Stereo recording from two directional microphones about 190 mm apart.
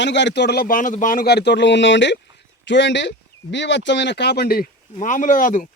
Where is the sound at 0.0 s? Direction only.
70° left (ahead or behind).